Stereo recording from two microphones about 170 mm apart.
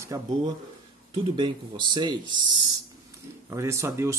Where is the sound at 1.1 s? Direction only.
30° right (ahead or behind).